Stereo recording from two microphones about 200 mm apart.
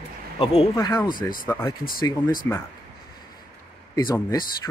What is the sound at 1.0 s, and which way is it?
Speech, 45° left (ahead or behind).